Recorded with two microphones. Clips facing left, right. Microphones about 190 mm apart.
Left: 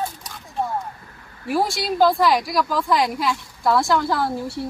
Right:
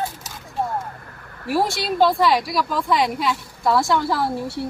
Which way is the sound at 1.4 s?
Centre (ahead or behind).